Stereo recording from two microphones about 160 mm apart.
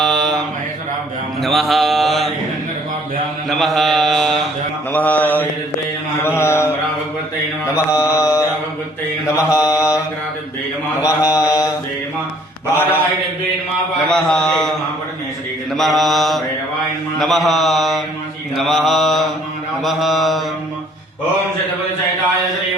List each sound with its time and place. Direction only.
0.0 s mantra: centre (ahead or behind)
3.5 s mantra: centre (ahead or behind); by 6.7 s 15° left (ahead or behind)
7.9 s mantra: 20° left (ahead or behind)
11.0 s mantra: 20° left (ahead or behind)
12.7 s a sound: 10° left (ahead or behind)
14.1 s a man's voice: 5° left (ahead or behind)
15.7 s mantra: centre (ahead or behind)